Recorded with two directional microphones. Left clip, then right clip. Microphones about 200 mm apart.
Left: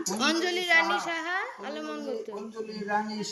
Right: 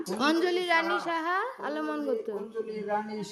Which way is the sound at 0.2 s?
25° right (ahead or behind).